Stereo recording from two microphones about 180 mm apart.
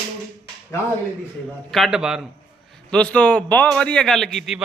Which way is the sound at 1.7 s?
Centre (ahead or behind).